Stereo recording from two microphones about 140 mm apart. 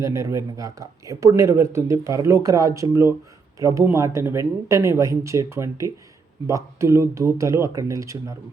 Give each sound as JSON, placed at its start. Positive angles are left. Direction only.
{"t": 0.0, "sound": "speech", "side_deg": -20}